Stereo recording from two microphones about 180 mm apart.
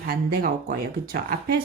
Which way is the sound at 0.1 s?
55° right (ahead or behind).